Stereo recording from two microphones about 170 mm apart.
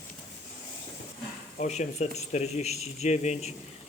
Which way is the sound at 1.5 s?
45° left (ahead or behind).